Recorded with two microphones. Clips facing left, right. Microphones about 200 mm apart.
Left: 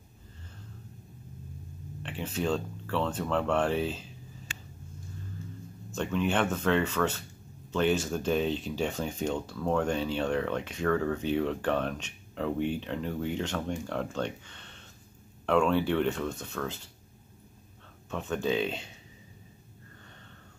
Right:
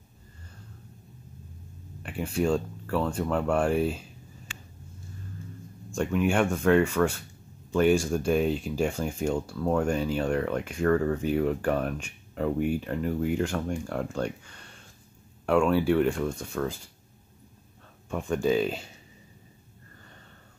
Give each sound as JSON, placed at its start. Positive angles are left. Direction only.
{"t": 2.0, "sound": "speech", "side_deg": -10}
{"t": 5.9, "sound": "speech", "side_deg": -10}
{"t": 18.1, "sound": "speech", "side_deg": -10}